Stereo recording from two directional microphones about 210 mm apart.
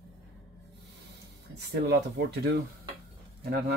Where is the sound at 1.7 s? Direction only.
55° right (ahead or behind).